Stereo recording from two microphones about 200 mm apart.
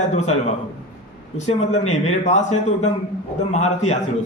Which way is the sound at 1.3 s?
35° left (ahead or behind).